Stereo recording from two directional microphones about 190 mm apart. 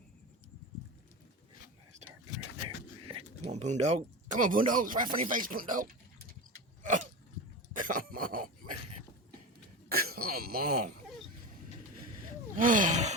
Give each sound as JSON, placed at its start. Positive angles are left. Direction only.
{"t": 3.1, "sound": "speech", "side_deg": -30}
{"t": 6.8, "sound": "a sound", "side_deg": -40}
{"t": 7.7, "sound": "throat clearing", "side_deg": -45}
{"t": 9.9, "sound": "throat clearing", "side_deg": -50}
{"t": 12.5, "sound": "speech", "side_deg": -45}